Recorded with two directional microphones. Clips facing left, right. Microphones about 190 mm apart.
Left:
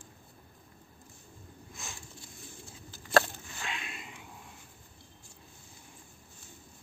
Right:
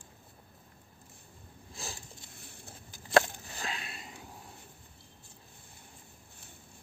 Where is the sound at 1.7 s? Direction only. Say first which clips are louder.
Right 4 dB; 35° right (ahead or behind).